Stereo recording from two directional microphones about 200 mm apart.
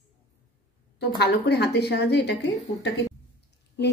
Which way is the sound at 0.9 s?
55° left (ahead or behind).